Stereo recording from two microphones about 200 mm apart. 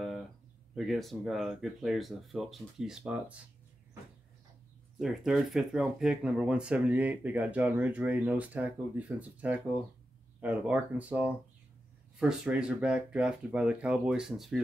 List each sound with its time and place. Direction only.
0.7 s speech: centre (ahead or behind)
4.9 s speech: centre (ahead or behind)